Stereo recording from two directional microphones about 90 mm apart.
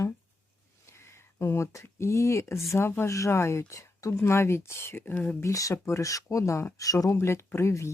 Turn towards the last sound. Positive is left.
turn(degrees=30)  # may be behind; listen again after turning